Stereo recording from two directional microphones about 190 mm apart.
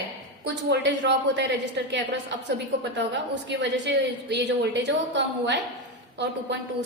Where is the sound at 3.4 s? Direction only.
65° right (ahead or behind).